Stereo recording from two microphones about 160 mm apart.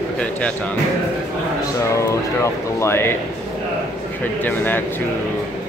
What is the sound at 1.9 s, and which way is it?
Speech, 20° left (ahead or behind).